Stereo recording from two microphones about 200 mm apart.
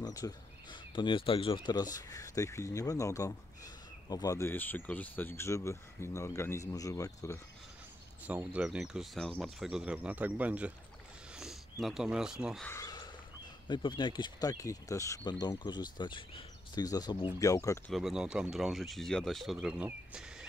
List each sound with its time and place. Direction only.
0.0 s speech: 20° left (ahead or behind)
8.3 s speech: 5° right (ahead or behind)
12.6 s a sound: 15° left (ahead or behind)
13.7 s speech: 25° left (ahead or behind)
17.9 s speech: centre (ahead or behind)